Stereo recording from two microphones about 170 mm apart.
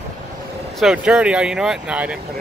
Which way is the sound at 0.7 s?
5° right (ahead or behind).